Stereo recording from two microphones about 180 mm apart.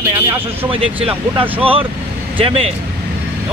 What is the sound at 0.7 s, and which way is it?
Speech, 30° right (ahead or behind).